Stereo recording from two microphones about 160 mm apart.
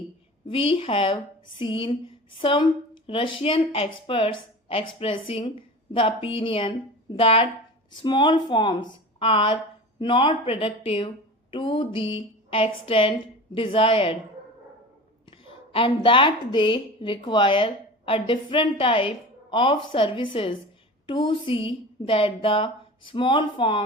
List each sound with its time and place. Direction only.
0.4 s a woman's voice: 30° left (ahead or behind)
15.3 s a woman's voice: 35° left (ahead or behind)